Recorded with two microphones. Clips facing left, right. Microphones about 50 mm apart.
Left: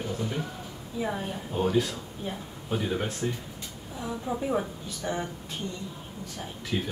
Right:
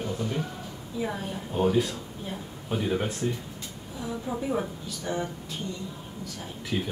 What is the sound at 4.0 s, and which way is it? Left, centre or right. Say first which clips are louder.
Speech: even; centre.